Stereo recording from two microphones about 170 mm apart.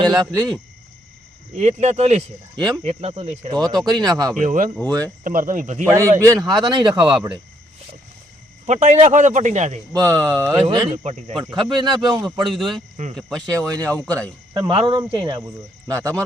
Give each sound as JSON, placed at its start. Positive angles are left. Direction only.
{"t": 0.1, "sound": "speech", "side_deg": 0}
{"t": 1.5, "sound": "speech", "side_deg": -45}
{"t": 3.5, "sound": "speech", "side_deg": -25}
{"t": 4.4, "sound": "speech", "side_deg": -50}
{"t": 4.9, "sound": "speech", "side_deg": -20}
{"t": 5.2, "sound": "speech", "side_deg": -50}
{"t": 5.9, "sound": "speech", "side_deg": -20}
{"t": 8.6, "sound": "speech", "side_deg": -45}
{"t": 9.9, "sound": "speech", "side_deg": -20}
{"t": 10.9, "sound": "speech", "side_deg": -40}
{"t": 11.5, "sound": "speech", "side_deg": -25}
{"t": 12.5, "sound": "speech", "side_deg": 0}
{"t": 13.4, "sound": "speech", "side_deg": -20}